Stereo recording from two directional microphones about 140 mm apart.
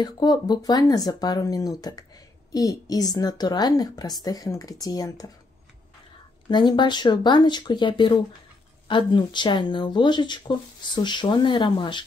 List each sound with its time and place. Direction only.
0.0 s speech: 30° left (ahead or behind)
6.5 s speech: 30° left (ahead or behind)